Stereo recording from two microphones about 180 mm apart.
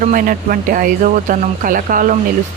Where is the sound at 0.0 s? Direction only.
50° right (ahead or behind).